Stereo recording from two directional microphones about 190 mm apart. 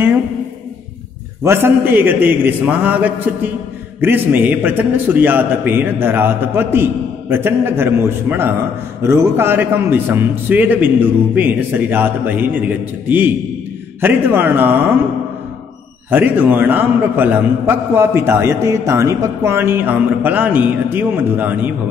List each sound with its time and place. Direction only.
1.4 s a man's voice: 10° right (ahead or behind)
16.1 s a man's voice: 10° right (ahead or behind)